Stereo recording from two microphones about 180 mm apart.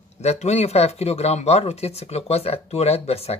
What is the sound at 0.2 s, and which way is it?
Speech, 40° left (ahead or behind).